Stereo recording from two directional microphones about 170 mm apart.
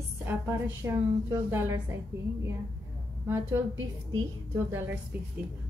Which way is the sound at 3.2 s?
15° right (ahead or behind).